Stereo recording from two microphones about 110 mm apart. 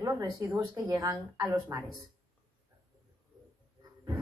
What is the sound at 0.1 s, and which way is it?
A woman's voice, 30° right (ahead or behind).